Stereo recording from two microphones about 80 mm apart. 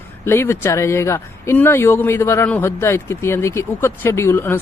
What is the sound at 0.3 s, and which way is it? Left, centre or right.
Speech, left.